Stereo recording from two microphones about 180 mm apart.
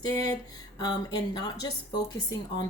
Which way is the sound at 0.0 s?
20° left (ahead or behind).